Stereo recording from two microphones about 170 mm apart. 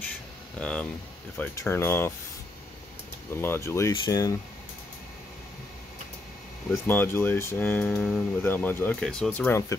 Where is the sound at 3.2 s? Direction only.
15° left (ahead or behind).